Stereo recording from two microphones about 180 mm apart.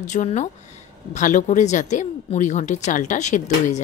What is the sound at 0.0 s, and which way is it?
Speech, 40° left (ahead or behind).